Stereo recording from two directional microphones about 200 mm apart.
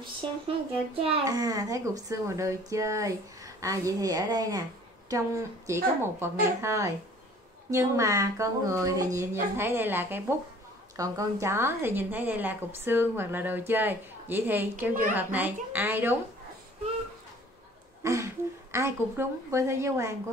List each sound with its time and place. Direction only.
1.0 s a woman's voice: 20° right (ahead or behind)
18.0 s a woman's voice: 15° right (ahead or behind)